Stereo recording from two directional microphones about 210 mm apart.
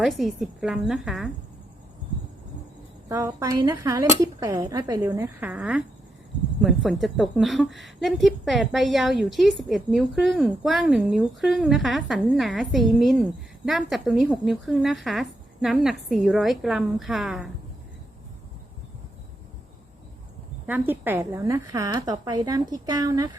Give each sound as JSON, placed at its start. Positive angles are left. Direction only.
{"t": 0.0, "sound": "a woman's voice", "side_deg": 0}
{"t": 3.1, "sound": "a woman's voice", "side_deg": -15}
{"t": 20.7, "sound": "speech", "side_deg": -10}